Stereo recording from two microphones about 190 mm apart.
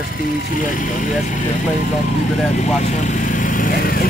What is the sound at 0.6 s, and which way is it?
Speech, 45° left (ahead or behind).